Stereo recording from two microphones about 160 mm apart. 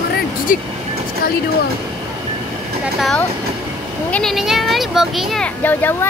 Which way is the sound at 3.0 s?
Centre (ahead or behind).